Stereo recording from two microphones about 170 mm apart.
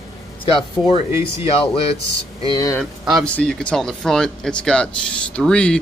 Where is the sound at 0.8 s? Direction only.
35° left (ahead or behind).